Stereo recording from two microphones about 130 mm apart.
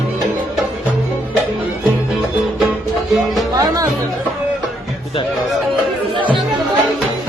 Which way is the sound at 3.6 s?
30° right (ahead or behind).